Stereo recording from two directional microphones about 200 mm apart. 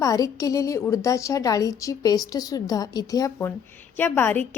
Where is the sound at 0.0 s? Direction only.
15° left (ahead or behind).